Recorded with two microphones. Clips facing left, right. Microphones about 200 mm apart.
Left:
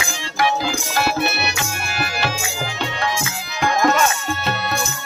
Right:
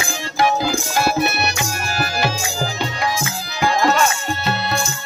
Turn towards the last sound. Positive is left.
turn(degrees=0)  # may be behind; listen again after turning